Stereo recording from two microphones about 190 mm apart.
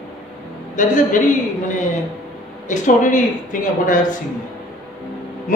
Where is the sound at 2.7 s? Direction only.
45° left (ahead or behind).